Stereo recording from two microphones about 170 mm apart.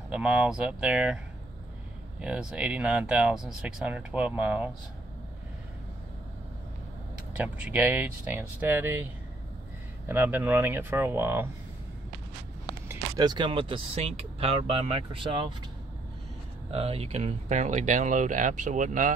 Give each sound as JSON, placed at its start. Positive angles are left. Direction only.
{"t": 0.1, "sound": "speech", "side_deg": -5}
{"t": 2.2, "sound": "speech", "side_deg": -5}
{"t": 7.3, "sound": "speech", "side_deg": -10}
{"t": 13.2, "sound": "speech", "side_deg": -25}
{"t": 16.7, "sound": "speech", "side_deg": -35}